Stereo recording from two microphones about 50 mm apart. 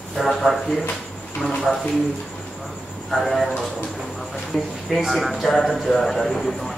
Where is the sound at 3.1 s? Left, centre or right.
Centre.